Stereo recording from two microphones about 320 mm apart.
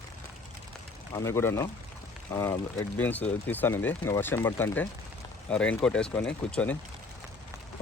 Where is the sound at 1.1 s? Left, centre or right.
Centre.